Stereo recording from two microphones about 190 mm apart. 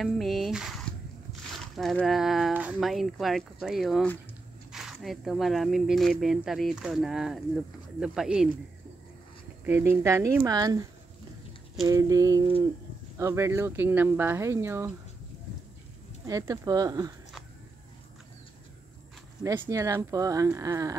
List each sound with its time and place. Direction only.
0.0 s speech: centre (ahead or behind)
1.8 s speech: centre (ahead or behind)
9.7 s speech: 10° right (ahead or behind)
11.9 s speech: 15° right (ahead or behind)
16.3 s speech: 15° right (ahead or behind)
19.6 s speech: 15° right (ahead or behind)